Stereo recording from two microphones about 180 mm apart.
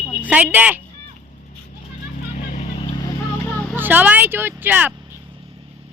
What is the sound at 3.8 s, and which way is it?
Speech, 10° right (ahead or behind).